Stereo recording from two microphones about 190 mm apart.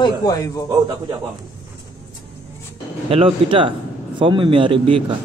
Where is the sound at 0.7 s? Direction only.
20° right (ahead or behind).